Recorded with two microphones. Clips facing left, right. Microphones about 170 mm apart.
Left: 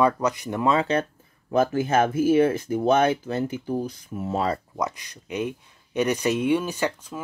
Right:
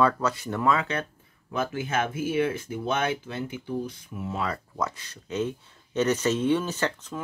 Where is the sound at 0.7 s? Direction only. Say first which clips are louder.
Left 4 dB; 30° left (ahead or behind).